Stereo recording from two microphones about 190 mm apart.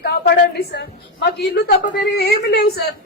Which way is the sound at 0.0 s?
55° left (ahead or behind).